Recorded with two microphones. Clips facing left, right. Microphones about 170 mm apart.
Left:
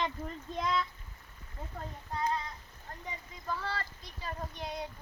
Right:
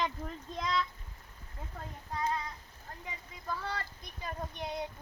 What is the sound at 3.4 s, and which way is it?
Speech, 10° right (ahead or behind).